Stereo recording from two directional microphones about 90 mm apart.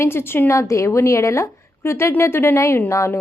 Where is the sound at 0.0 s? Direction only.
25° left (ahead or behind).